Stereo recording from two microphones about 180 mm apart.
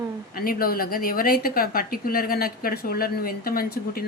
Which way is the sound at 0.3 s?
55° left (ahead or behind).